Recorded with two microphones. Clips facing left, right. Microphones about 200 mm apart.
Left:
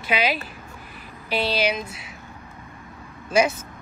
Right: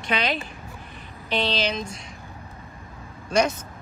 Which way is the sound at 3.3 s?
5° left (ahead or behind).